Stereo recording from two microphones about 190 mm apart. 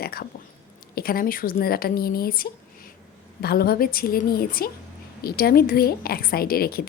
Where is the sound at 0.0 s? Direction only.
55° left (ahead or behind).